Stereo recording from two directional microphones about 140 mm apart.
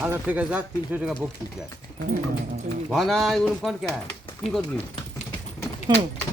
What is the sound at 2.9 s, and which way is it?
Speech, centre (ahead or behind).